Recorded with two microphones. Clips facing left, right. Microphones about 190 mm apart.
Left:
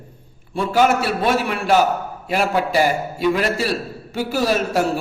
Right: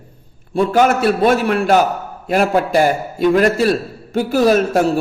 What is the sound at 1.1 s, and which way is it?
A man's voice, 50° right (ahead or behind).